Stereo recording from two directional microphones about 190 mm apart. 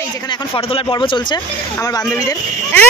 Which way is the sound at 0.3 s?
25° left (ahead or behind).